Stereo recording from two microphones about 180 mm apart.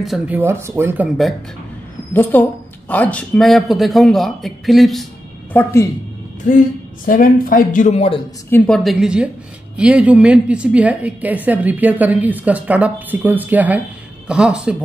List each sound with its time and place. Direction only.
0.0 s a woman's voice: 5° right (ahead or behind)
2.1 s a woman's voice: 10° left (ahead or behind)
5.5 s a woman's voice: 10° left (ahead or behind)
7.1 s speech: 50° left (ahead or behind); by 8.2 s 35° left (ahead or behind)
8.5 s a woman's voice: 10° left (ahead or behind)